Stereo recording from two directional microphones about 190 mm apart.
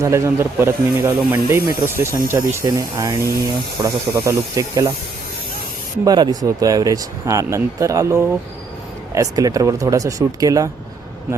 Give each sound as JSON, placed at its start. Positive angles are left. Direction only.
{"t": 0.0, "sound": "speech", "side_deg": -15}
{"t": 6.1, "sound": "speech", "side_deg": -20}